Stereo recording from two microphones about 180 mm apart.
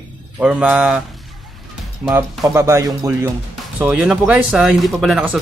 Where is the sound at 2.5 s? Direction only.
15° right (ahead or behind).